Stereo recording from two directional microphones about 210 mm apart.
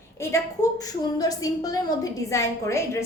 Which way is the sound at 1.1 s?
15° left (ahead or behind).